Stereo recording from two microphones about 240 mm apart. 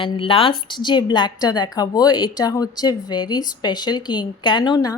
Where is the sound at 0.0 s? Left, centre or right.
Left.